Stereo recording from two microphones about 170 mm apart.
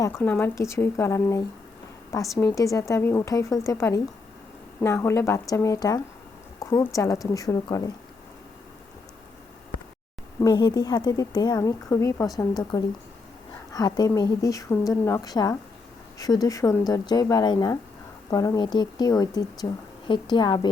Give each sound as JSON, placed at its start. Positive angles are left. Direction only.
{"t": 0.0, "sound": "a woman's voice", "side_deg": 15}
{"t": 10.4, "sound": "speech", "side_deg": 25}